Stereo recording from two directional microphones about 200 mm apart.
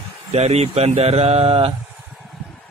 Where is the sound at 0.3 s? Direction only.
30° right (ahead or behind).